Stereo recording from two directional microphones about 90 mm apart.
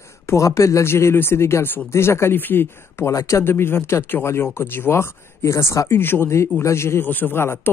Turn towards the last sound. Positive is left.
turn(degrees=25)  # may be behind; listen again after turning